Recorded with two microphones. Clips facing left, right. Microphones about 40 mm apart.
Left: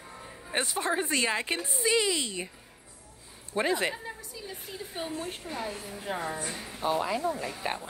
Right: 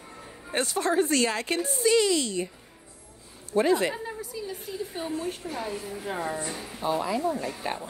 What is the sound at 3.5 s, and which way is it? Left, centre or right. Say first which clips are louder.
Speech: right 5 dB; centre.